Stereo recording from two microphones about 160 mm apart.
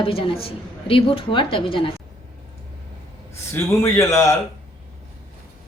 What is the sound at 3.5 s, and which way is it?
Speech, 15° left (ahead or behind).